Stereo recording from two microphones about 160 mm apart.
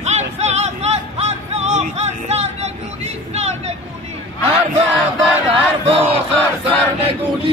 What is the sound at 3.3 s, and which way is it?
Vehicle, 40° right (ahead or behind).